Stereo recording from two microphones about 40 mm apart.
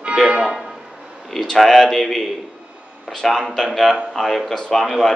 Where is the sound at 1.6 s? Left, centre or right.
Centre.